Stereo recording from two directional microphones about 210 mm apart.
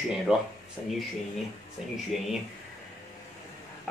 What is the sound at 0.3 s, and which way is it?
Speech, centre (ahead or behind).